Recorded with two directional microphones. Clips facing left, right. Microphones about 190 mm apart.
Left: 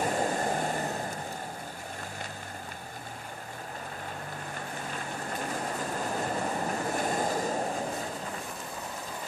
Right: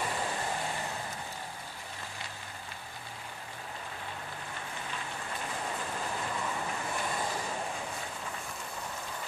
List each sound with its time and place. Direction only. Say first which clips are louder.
0.0 s vehicle: left 6 dB; 45° left (ahead or behind)
6.1 s train: left 6 dB; 45° left (ahead or behind)